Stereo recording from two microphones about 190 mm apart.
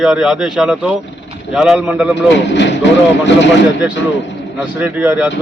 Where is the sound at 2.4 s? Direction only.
70° left (ahead or behind).